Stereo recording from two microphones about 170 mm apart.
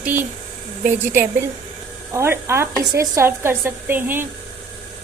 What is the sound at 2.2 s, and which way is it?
Speech, 15° right (ahead or behind).